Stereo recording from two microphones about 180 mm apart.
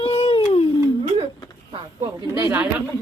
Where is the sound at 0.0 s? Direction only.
30° left (ahead or behind).